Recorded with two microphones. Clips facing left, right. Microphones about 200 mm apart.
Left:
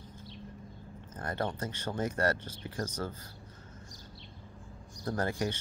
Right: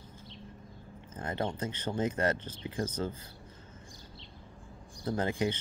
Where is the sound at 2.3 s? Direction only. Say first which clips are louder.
Right 2 dB; 10° left (ahead or behind).